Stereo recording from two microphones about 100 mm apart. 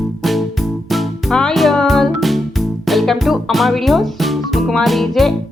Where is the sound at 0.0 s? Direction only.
Centre (ahead or behind).